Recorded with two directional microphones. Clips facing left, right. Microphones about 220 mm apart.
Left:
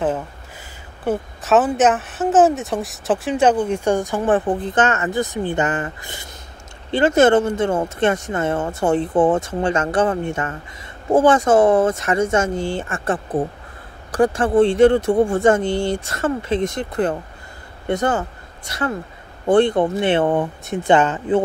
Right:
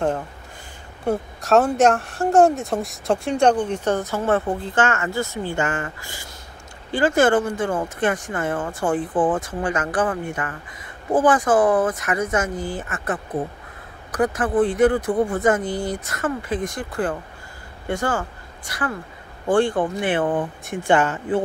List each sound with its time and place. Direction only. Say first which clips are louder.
1.0 s a woman's voice: left 1 dB; centre (ahead or behind); by 21.4 s 20° left (ahead or behind)